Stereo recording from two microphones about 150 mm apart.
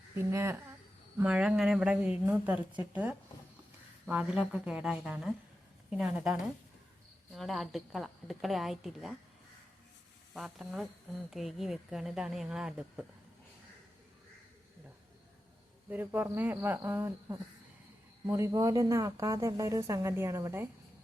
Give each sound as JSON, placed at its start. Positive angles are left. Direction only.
{"t": 0.2, "sound": "speech", "side_deg": -20}
{"t": 1.2, "sound": "a woman's voice", "side_deg": -5}
{"t": 7.3, "sound": "a woman's voice", "side_deg": 0}
{"t": 10.3, "sound": "a woman's voice", "side_deg": 0}
{"t": 15.9, "sound": "a woman's voice", "side_deg": -15}